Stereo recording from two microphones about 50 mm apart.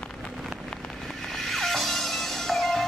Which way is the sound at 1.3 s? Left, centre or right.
Centre.